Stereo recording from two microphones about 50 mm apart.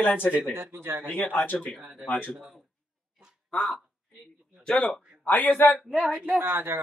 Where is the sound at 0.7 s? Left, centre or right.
Right.